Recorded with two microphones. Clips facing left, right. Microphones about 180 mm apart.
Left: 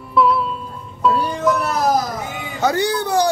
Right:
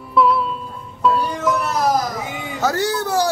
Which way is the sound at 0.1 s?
Centre (ahead or behind).